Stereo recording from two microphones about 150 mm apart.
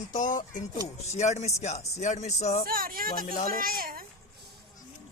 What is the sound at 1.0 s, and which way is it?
Speech, 50° left (ahead or behind).